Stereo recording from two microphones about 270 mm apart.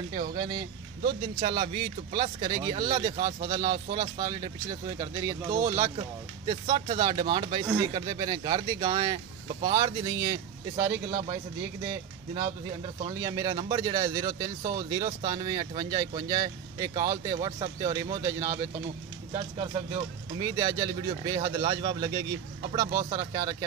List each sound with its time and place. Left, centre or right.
0.3 s speech: centre
13.0 s speech: centre
20.3 s speech: centre